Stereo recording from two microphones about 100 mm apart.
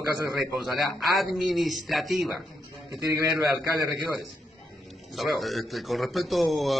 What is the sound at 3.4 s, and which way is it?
Speech, 5° right (ahead or behind).